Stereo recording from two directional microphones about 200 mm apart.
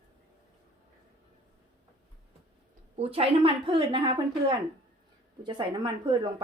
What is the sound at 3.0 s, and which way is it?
A woman's voice, 30° right (ahead or behind).